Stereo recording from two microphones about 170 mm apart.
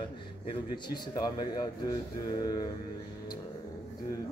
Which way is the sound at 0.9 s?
25° left (ahead or behind).